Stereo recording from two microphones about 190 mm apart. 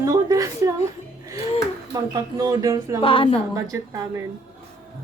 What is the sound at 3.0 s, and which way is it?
Speech, 30° left (ahead or behind).